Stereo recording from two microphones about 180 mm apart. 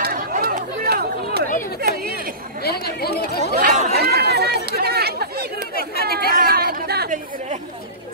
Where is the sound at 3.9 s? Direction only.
65° right (ahead or behind); by 7.6 s 45° right (ahead or behind).